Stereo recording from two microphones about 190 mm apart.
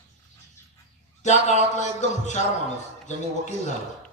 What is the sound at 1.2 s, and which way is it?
A man's voice, 40° left (ahead or behind).